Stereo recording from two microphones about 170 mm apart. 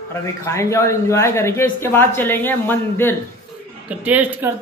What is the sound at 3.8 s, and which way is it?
Speech, 10° right (ahead or behind).